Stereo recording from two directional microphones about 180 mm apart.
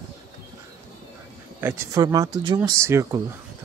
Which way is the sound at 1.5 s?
15° right (ahead or behind).